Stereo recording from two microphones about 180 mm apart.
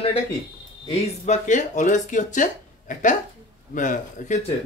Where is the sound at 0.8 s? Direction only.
40° left (ahead or behind).